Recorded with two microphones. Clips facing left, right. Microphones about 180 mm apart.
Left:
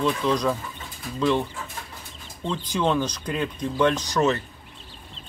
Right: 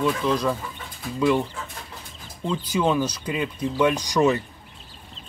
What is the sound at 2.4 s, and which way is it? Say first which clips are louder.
Speech: right 2 dB; 5° right (ahead or behind).